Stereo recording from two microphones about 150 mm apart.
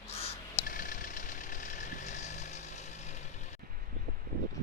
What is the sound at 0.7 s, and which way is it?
Vehicle, 65° left (ahead or behind).